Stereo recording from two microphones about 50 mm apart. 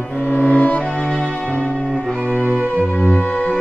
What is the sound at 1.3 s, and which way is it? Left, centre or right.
Music, left.